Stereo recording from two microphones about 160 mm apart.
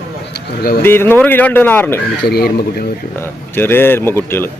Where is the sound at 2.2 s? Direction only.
75° left (ahead or behind).